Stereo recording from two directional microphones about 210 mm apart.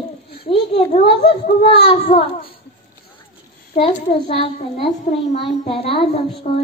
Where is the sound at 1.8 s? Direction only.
25° left (ahead or behind).